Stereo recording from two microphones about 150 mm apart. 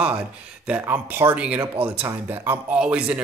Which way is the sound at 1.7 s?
35° right (ahead or behind).